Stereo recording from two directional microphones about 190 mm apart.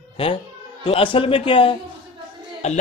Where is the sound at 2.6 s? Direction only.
35° left (ahead or behind).